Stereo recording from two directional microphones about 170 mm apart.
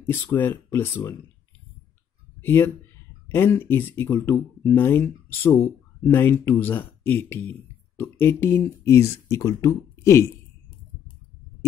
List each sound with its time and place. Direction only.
0.0 s speech: 10° left (ahead or behind)
2.4 s speech: 15° left (ahead or behind)